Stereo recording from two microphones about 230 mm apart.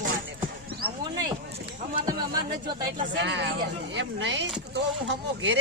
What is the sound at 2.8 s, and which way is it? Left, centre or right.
Speech, right.